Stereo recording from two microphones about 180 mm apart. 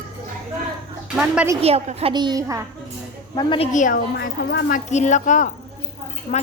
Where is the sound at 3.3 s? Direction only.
30° left (ahead or behind).